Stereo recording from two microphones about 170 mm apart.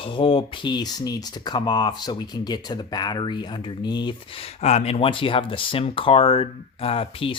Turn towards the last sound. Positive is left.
turn(degrees=30)  # may be behind; listen again after turning